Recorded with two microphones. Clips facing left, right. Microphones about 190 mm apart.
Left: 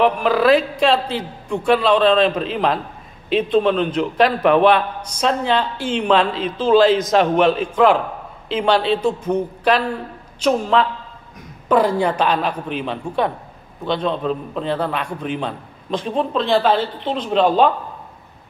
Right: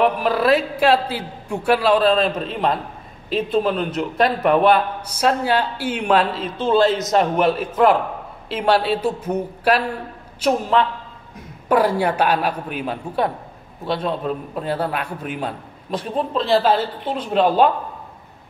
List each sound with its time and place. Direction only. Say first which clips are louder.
0.0 s a man's voice: left 2 dB; centre (ahead or behind)
6.8 s a man's voice: left 2 dB; 90° left
7.5 s a man's voice: left 1 dB; 5° right (ahead or behind)